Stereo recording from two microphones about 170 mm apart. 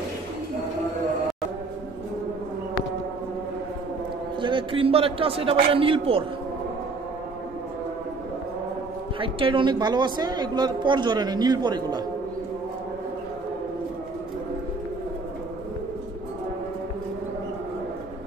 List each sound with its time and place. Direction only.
4.4 s a man's voice: 30° right (ahead or behind)
9.2 s a woman's voice: 30° right (ahead or behind)